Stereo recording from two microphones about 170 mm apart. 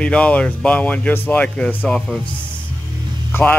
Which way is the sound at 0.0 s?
5° left (ahead or behind).